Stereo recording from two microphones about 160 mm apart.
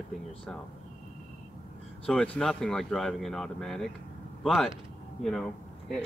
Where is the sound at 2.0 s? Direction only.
5° left (ahead or behind).